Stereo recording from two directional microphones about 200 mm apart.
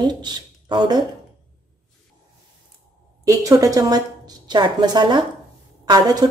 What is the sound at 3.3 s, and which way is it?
A woman's voice, 15° right (ahead or behind).